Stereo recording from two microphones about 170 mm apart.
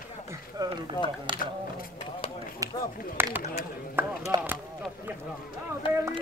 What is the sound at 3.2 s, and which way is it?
Speech, 15° right (ahead or behind).